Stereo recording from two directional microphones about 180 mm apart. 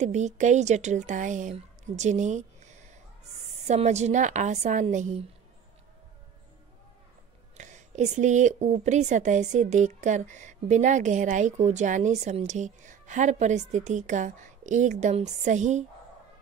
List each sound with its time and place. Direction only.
0.0 s a woman's voice: 40° right (ahead or behind)
7.5 s speech: 40° right (ahead or behind)